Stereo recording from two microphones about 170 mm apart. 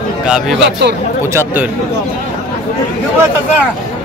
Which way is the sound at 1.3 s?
15° right (ahead or behind).